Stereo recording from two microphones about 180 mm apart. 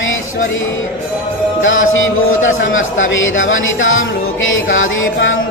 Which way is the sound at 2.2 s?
90° left.